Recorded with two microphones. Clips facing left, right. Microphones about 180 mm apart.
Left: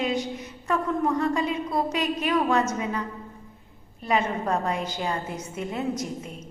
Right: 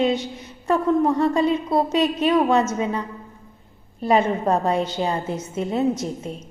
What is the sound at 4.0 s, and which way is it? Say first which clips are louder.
A woman's voice: right 6 dB; 30° right (ahead or behind).